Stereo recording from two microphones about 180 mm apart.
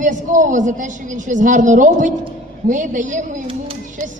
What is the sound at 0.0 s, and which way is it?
A woman's voice, 45° right (ahead or behind).